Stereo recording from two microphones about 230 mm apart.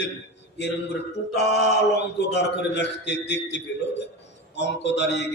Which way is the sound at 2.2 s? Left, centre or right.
Left.